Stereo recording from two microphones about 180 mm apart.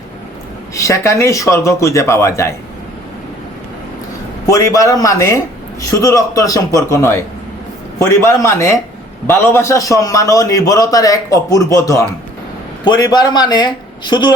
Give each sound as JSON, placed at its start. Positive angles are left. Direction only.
{"t": 0.7, "sound": "a man's voice", "side_deg": 15}
{"t": 4.4, "sound": "a man's voice", "side_deg": 20}